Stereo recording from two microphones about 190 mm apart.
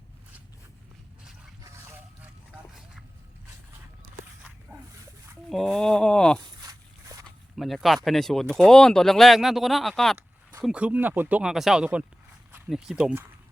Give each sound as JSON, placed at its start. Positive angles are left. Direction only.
{"t": 1.6, "sound": "a sound", "side_deg": -15}
{"t": 4.9, "sound": "dog", "side_deg": -15}
{"t": 5.5, "sound": "speech", "side_deg": 0}
{"t": 6.6, "sound": "walk", "side_deg": -20}
{"t": 7.3, "sound": "speech", "side_deg": 0}